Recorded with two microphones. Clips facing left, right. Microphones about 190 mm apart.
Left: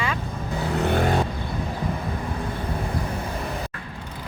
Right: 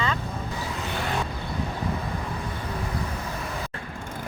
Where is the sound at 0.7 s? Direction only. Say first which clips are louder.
Left 12 dB; 60° left (ahead or behind).